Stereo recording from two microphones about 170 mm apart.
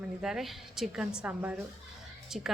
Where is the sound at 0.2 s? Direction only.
5° right (ahead or behind).